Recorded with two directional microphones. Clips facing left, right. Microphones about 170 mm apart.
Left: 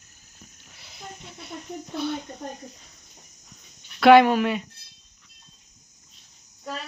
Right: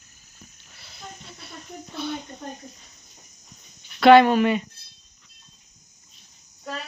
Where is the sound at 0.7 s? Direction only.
15° left (ahead or behind).